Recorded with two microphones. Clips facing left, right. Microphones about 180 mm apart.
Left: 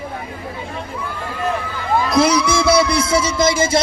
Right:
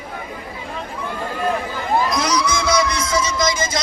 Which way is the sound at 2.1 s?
30° left (ahead or behind).